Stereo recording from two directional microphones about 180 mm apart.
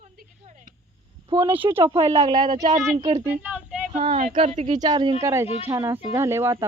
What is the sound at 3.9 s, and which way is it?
Speech, 35° right (ahead or behind).